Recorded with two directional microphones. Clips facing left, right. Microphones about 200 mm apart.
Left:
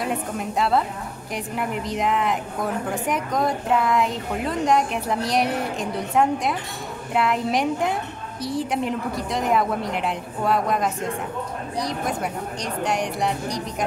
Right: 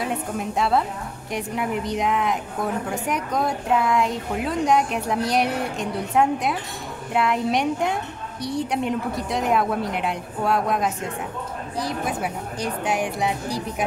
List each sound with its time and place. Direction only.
0.0 s a woman's voice: centre (ahead or behind)